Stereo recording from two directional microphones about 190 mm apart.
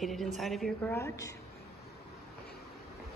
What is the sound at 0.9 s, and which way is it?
Speech, 15° left (ahead or behind).